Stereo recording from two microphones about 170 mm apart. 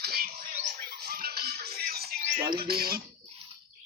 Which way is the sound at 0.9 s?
65° right (ahead or behind).